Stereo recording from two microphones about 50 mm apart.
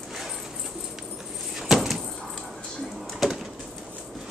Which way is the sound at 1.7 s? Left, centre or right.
Centre.